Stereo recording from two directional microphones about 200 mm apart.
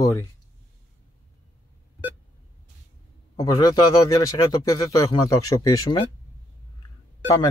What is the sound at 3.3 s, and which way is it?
A man's voice, 20° left (ahead or behind).